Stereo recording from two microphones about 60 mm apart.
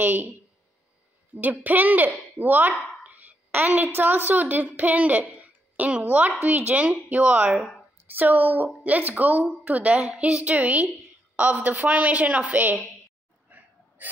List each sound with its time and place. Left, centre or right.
0.0 s a woman's voice: right
1.3 s a woman's voice: right
2.7 s speech: centre
3.5 s a woman's voice: right
13.5 s gasp: right